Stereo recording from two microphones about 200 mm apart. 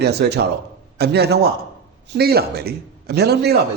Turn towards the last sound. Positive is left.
turn(degrees=-55)  # may be behind; listen again after turning